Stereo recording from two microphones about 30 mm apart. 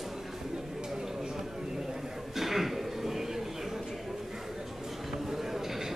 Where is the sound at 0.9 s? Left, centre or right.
Centre.